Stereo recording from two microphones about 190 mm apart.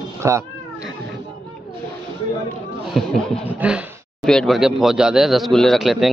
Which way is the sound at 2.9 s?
5° left (ahead or behind).